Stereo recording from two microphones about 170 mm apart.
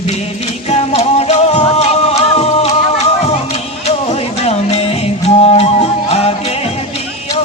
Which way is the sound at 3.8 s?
40° left (ahead or behind).